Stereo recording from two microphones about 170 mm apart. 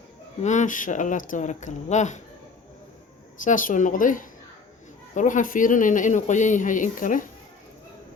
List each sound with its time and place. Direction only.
0.4 s speech: 45° left (ahead or behind)
3.3 s speech: 50° left (ahead or behind)